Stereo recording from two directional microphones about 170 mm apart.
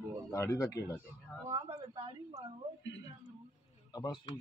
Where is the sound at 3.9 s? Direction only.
20° left (ahead or behind).